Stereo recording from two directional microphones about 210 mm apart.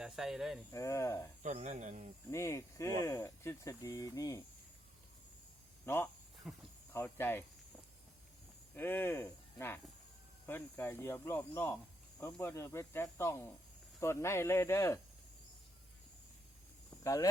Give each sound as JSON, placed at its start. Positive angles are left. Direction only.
{"t": 0.0, "sound": "speech", "side_deg": 0}
{"t": 0.7, "sound": "speech", "side_deg": 15}
{"t": 1.4, "sound": "speech", "side_deg": -35}
{"t": 2.3, "sound": "speech", "side_deg": 15}
{"t": 5.8, "sound": "speech", "side_deg": 10}
{"t": 6.5, "sound": "speech", "side_deg": 0}
{"t": 6.9, "sound": "speech", "side_deg": 10}
{"t": 8.7, "sound": "speech", "side_deg": 10}
{"t": 17.0, "sound": "speech", "side_deg": 15}